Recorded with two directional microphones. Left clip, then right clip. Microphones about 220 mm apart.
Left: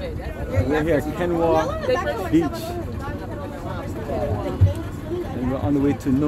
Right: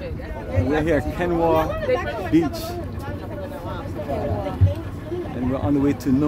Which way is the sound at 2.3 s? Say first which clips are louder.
Right 1 dB; 5° right (ahead or behind).